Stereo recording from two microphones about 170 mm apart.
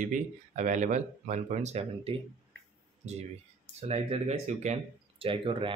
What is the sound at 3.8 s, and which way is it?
Speech, 35° right (ahead or behind).